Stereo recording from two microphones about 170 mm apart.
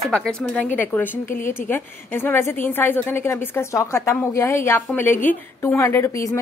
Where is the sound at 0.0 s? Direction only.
5° left (ahead or behind).